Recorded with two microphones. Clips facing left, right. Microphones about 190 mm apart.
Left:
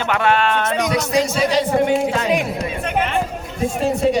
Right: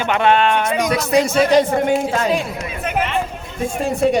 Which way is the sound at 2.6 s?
35° left (ahead or behind).